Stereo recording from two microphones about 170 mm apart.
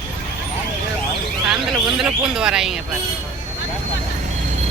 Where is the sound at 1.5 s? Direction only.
Centre (ahead or behind).